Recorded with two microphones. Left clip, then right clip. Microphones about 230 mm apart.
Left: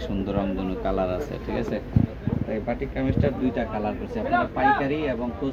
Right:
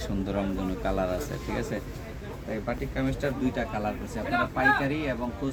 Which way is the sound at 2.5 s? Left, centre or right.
Centre.